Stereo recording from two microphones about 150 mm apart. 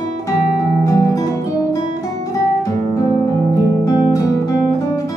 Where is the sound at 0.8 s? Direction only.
20° left (ahead or behind).